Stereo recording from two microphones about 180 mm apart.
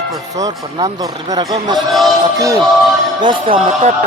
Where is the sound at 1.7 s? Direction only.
Centre (ahead or behind).